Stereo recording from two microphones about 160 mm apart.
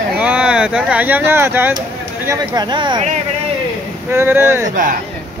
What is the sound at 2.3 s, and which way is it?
Speech, 25° right (ahead or behind).